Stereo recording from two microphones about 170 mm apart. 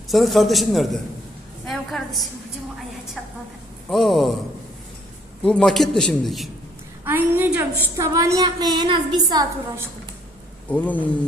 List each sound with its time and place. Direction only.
0.1 s a man's voice: centre (ahead or behind)
3.8 s a man's voice: centre (ahead or behind)
5.4 s a man's voice: 5° left (ahead or behind)
7.0 s a woman's voice: 10° right (ahead or behind)
10.7 s a sound: 10° left (ahead or behind)